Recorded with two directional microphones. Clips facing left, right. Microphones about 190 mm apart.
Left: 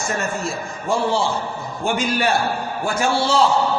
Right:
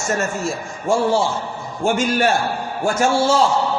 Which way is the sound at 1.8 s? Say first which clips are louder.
Right 3 dB; 45° right (ahead or behind).